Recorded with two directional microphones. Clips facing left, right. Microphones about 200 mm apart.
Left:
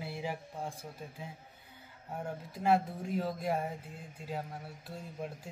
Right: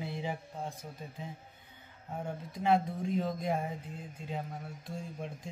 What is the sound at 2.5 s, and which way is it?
Speech, 5° left (ahead or behind).